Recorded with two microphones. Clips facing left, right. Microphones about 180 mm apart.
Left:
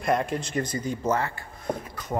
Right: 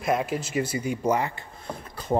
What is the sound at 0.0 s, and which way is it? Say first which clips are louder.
Speech: even; 5° right (ahead or behind).